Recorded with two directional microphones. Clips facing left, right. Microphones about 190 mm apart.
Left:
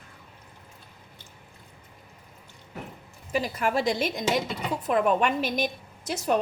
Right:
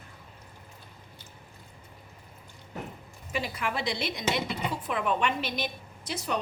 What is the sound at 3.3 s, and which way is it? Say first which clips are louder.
A woman's voice: left 6 dB; 40° left (ahead or behind).